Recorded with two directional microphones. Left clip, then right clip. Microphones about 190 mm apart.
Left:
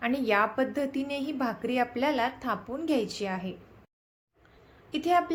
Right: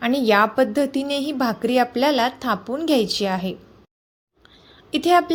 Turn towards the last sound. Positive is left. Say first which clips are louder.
# right 8 dB
turn(degrees=-40)  # may be behind; listen again after turning